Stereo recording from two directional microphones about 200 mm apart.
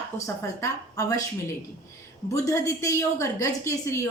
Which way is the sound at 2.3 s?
15° left (ahead or behind).